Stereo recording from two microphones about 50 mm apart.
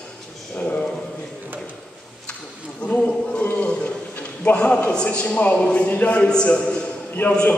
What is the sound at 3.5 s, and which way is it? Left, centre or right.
Bee, left.